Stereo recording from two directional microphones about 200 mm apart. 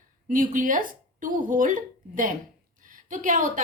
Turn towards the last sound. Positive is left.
turn(degrees=-40)  # may be behind; listen again after turning